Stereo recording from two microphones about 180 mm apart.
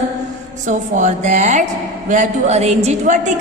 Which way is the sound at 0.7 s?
45° right (ahead or behind).